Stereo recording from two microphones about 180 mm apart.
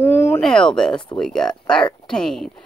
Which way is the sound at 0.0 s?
10° left (ahead or behind).